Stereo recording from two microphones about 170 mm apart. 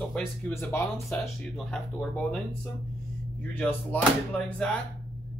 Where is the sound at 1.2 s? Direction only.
5° left (ahead or behind).